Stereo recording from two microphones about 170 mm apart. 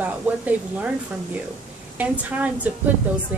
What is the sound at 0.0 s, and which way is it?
A woman's voice, 10° right (ahead or behind).